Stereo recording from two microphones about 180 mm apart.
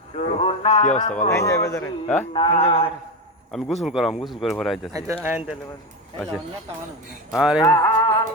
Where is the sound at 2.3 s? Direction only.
30° left (ahead or behind).